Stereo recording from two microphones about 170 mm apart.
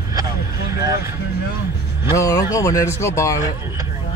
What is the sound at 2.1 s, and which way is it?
Speech, 20° left (ahead or behind).